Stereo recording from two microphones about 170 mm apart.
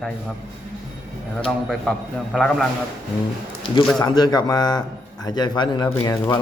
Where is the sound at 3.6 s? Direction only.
30° left (ahead or behind).